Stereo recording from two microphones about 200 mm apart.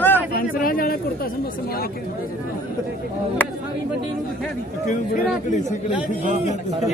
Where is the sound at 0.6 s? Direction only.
45° left (ahead or behind).